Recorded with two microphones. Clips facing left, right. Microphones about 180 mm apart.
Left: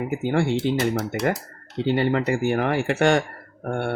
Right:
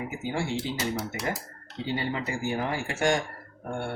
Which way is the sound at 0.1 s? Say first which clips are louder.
Left 11 dB; 60° left (ahead or behind).